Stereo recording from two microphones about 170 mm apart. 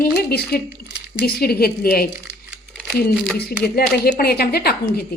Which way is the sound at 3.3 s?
65° left (ahead or behind).